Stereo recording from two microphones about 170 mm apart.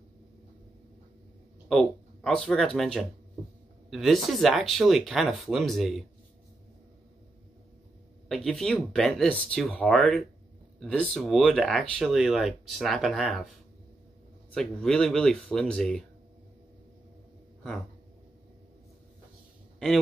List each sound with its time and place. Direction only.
1.7 s speech: 5° left (ahead or behind)
8.3 s speech: 5° left (ahead or behind)